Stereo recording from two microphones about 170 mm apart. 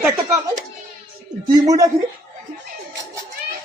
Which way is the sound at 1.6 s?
20° right (ahead or behind).